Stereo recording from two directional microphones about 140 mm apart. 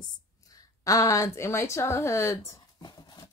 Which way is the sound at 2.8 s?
30° left (ahead or behind).